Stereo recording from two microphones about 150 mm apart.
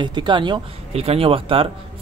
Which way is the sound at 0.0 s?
30° right (ahead or behind).